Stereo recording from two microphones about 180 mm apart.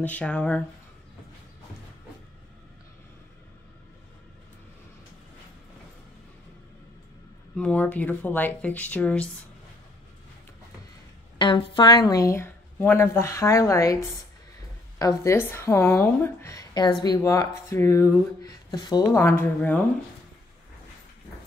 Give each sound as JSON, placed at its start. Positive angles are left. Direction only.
{"t": 0.0, "sound": "a woman's voice", "side_deg": 10}
{"t": 7.5, "sound": "a woman's voice", "side_deg": 5}
{"t": 11.3, "sound": "a woman's voice", "side_deg": 25}